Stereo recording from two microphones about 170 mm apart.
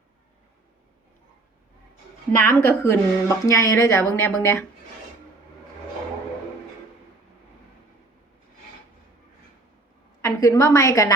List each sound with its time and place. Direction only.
2.4 s a woman's voice: 15° left (ahead or behind)
10.2 s a woman's voice: 20° left (ahead or behind)